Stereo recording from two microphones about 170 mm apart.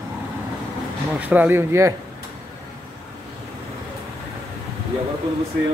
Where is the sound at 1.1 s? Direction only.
10° right (ahead or behind).